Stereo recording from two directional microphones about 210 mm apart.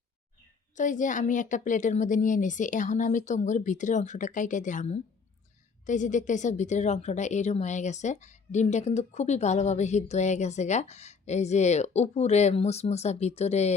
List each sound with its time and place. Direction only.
0.8 s a woman's voice: 35° left (ahead or behind)